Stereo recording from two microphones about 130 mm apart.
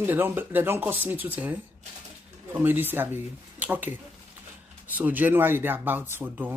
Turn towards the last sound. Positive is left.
turn(degrees=-15)  # may be behind; listen again after turning